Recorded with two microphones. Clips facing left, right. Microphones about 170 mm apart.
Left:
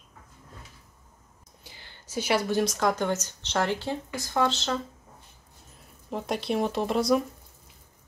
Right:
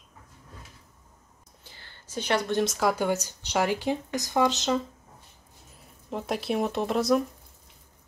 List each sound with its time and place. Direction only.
1.6 s speech: 10° left (ahead or behind); by 4.7 s 15° right (ahead or behind)
6.0 s speech: centre (ahead or behind)